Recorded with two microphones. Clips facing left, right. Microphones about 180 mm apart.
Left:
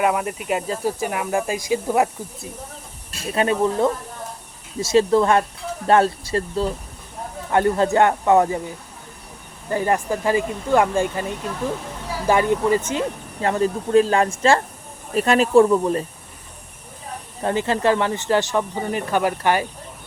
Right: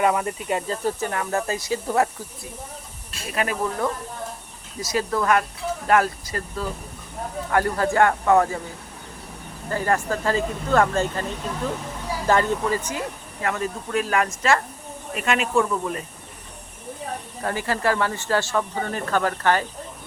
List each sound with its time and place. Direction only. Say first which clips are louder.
0.0 s speech: left 1 dB; 5° left (ahead or behind)
3.3 s speech: left 6 dB; 25° left (ahead or behind)
9.6 s speech: left 2 dB; 15° left (ahead or behind)
12.3 s speech: left 4 dB; 15° left (ahead or behind); by 16.0 s 35° left (ahead or behind)
17.4 s speech: left 5 dB; 20° left (ahead or behind)